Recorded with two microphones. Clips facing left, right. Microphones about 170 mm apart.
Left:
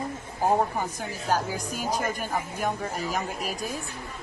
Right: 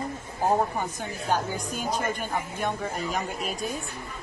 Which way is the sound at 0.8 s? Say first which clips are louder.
Even; 5° left (ahead or behind).